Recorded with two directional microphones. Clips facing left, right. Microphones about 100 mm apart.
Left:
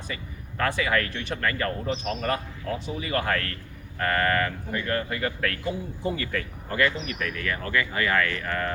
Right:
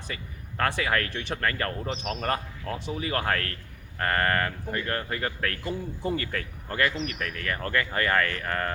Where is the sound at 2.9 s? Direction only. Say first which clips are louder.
Even; 45° right (ahead or behind).